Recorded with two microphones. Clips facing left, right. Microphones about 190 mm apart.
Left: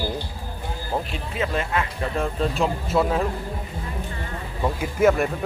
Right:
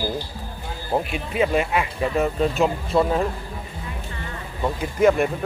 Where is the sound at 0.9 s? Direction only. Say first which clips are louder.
Right 5 dB; 15° right (ahead or behind); by 3.2 s centre (ahead or behind).